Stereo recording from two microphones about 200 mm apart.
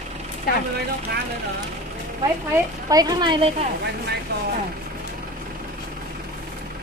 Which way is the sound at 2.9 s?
20° right (ahead or behind).